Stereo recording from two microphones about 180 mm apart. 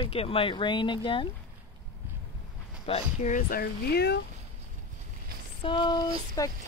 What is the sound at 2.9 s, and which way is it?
Speech, 35° left (ahead or behind).